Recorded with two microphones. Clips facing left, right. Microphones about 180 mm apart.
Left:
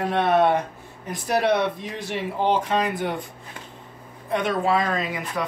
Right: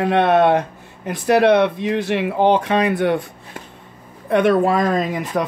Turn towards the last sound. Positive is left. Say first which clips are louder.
# right 7 dB
turn(degrees=-45)  # may be behind; listen again after turning